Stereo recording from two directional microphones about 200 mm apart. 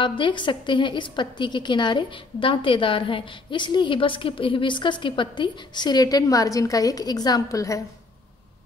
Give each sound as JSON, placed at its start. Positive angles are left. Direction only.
{"t": 0.0, "sound": "a woman's voice", "side_deg": 25}